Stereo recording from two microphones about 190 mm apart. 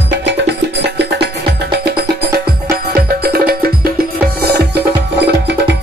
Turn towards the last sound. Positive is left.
turn(degrees=-60)  # may be behind; listen again after turning